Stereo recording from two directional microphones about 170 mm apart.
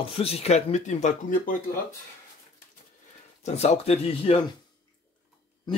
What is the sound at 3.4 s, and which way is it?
Speech, 40° left (ahead or behind).